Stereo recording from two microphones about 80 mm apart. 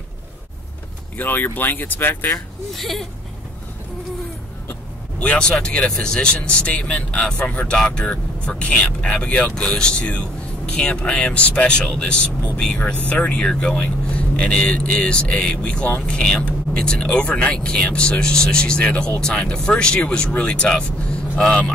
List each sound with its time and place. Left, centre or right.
1.1 s speech: left
2.3 s speech: centre
5.2 s speech: centre